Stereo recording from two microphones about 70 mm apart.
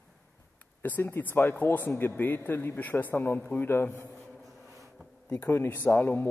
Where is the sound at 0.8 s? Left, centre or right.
Left.